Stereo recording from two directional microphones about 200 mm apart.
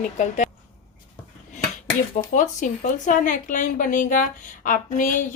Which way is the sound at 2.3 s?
40° left (ahead or behind).